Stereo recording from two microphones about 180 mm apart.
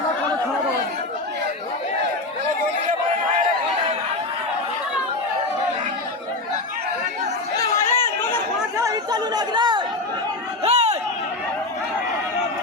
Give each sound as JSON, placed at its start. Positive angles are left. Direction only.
{"t": 7.5, "sound": "chatter", "side_deg": 20}
{"t": 8.8, "sound": "chatter", "side_deg": -20}
{"t": 10.6, "sound": "crowd", "side_deg": -35}